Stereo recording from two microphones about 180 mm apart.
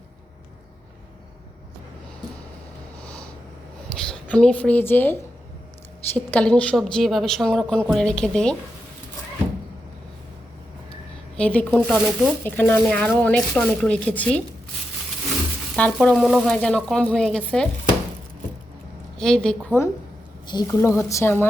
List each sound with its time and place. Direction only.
3.9 s a woman's voice: 5° left (ahead or behind)
11.3 s speech: 5° left (ahead or behind)
15.7 s speech: 5° left (ahead or behind)
19.2 s speech: 5° left (ahead or behind)
20.5 s speech: 20° left (ahead or behind)